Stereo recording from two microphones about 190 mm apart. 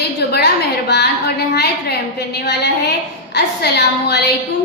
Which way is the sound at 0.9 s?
60° left (ahead or behind).